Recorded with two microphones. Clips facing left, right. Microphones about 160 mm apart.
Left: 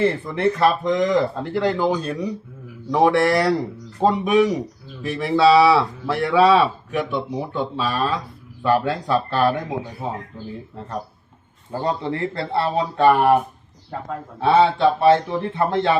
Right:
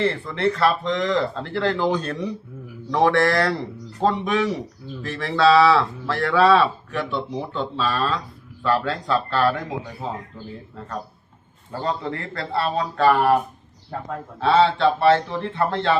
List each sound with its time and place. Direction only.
0.0 s speech: 15° left (ahead or behind)
11.7 s speech: 20° left (ahead or behind)